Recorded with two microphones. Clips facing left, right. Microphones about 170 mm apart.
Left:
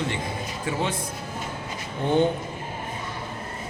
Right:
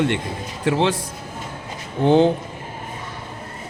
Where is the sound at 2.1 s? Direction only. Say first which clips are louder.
Right 6 dB; 90° right.